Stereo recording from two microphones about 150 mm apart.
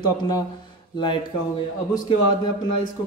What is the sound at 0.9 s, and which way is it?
Speech, 30° left (ahead or behind).